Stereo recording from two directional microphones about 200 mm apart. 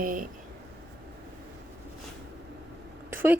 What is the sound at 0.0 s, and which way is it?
Speech, 45° right (ahead or behind).